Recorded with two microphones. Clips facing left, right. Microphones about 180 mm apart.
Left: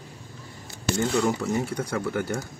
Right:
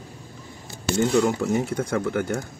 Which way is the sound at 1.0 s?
20° right (ahead or behind).